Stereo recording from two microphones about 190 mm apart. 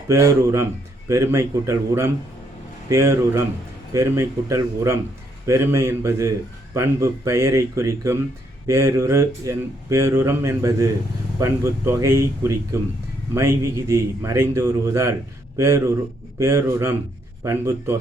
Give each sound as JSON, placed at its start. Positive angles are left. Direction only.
{"t": 0.1, "sound": "a man's voice", "side_deg": -15}